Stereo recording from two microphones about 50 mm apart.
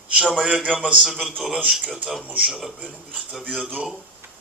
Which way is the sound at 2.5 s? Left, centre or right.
Centre.